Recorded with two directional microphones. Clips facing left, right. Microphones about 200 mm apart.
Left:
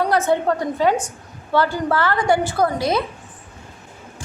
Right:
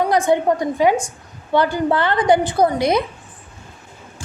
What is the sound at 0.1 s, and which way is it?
A woman's voice, 15° right (ahead or behind).